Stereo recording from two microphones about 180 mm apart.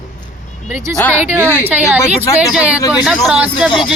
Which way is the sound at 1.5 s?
10° right (ahead or behind).